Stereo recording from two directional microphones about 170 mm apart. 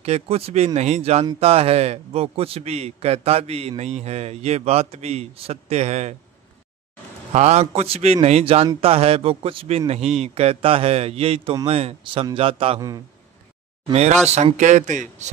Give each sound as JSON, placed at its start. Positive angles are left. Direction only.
{"t": 0.0, "sound": "a man's voice", "side_deg": -40}
{"t": 7.3, "sound": "a man's voice", "side_deg": -40}
{"t": 14.3, "sound": "speech", "side_deg": -45}